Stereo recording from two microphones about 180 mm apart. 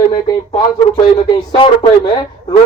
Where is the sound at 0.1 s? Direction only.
25° left (ahead or behind).